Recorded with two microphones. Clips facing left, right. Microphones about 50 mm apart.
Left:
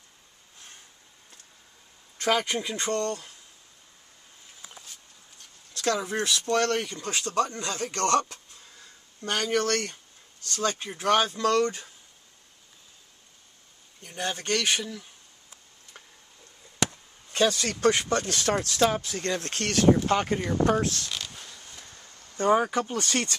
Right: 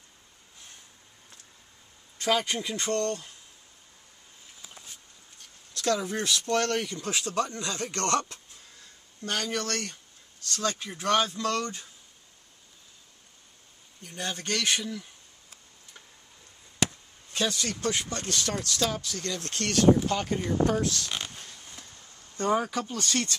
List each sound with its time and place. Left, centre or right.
2.5 s speech: left
5.8 s speech: left
7.0 s speech: centre
7.5 s speech: left
9.2 s speech: left
11.2 s speech: left
14.0 s speech: left
14.8 s speech: centre
17.5 s speech: left
18.3 s speech: left
20.3 s speech: left
22.4 s speech: left